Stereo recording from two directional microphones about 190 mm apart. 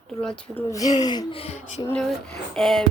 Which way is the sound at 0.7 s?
20° left (ahead or behind).